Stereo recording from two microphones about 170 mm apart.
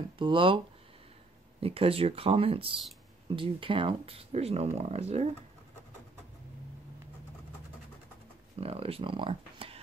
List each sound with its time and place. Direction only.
0.2 s speech: 30° right (ahead or behind)
1.6 s speech: 35° right (ahead or behind)
8.5 s speech: 35° right (ahead or behind)